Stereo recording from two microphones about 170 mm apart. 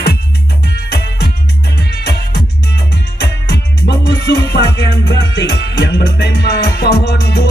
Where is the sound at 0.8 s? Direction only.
75° left (ahead or behind).